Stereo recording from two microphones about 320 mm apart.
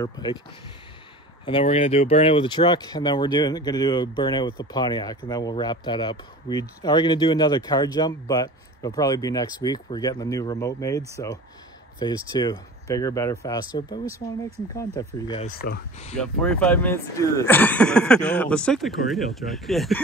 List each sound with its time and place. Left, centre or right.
0.0 s speech: centre
1.4 s speech: centre
15.4 s speech: left
16.2 s speech: centre